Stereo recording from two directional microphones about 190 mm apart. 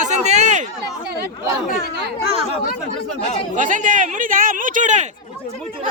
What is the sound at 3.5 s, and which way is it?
Speech, 40° right (ahead or behind).